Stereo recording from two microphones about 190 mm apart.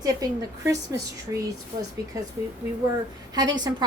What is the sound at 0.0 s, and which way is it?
A woman's voice, 20° right (ahead or behind).